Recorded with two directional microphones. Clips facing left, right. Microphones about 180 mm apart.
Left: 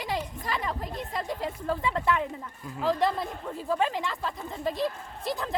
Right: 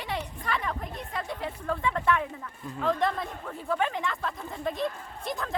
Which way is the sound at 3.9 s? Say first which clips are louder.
Even; 5° left (ahead or behind).